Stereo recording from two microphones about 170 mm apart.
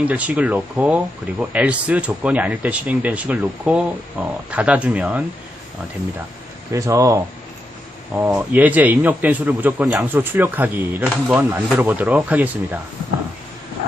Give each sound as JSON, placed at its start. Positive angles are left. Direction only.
{"t": 0.0, "sound": "speech", "side_deg": -10}
{"t": 6.7, "sound": "speech", "side_deg": -20}